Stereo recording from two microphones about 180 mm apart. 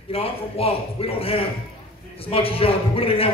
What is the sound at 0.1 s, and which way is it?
Speech, 30° left (ahead or behind).